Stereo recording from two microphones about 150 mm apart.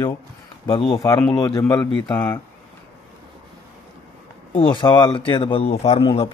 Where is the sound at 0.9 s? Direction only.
25° left (ahead or behind).